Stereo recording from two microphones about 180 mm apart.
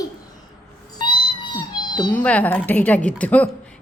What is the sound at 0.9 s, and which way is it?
Cat, 25° left (ahead or behind).